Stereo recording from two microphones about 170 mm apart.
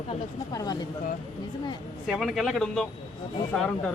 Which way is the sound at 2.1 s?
Centre (ahead or behind).